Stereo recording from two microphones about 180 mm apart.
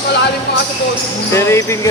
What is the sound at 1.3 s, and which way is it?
Speech, 15° left (ahead or behind).